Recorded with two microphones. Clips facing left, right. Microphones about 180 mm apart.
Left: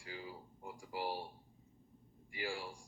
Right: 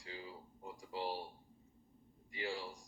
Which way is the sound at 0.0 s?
25° right (ahead or behind).